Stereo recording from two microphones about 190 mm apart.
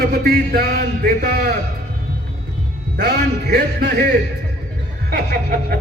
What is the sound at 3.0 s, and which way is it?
Speech, 60° right (ahead or behind).